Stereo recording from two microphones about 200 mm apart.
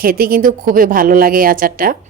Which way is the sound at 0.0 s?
45° right (ahead or behind).